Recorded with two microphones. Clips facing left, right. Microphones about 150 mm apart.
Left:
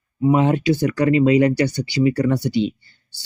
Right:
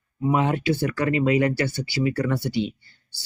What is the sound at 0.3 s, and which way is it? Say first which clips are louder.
Speech: left 5 dB; 25° left (ahead or behind).